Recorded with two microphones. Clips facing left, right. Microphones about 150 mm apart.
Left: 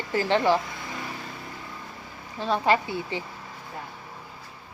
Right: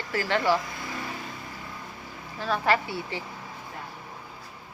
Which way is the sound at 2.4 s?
20° left (ahead or behind).